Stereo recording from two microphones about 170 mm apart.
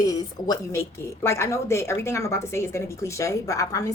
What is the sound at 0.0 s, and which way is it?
A woman's voice, 20° left (ahead or behind).